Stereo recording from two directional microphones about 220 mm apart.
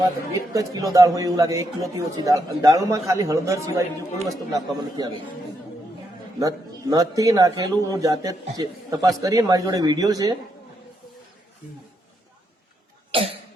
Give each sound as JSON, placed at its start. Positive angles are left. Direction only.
{"t": 0.3, "sound": "a man's voice", "side_deg": -15}
{"t": 6.4, "sound": "a man's voice", "side_deg": -15}
{"t": 13.1, "sound": "cough", "side_deg": -25}